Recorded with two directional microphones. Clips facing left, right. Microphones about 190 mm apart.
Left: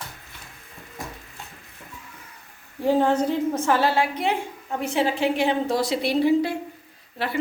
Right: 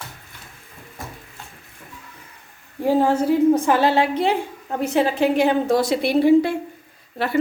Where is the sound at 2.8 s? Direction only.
10° right (ahead or behind); by 4.3 s 25° right (ahead or behind).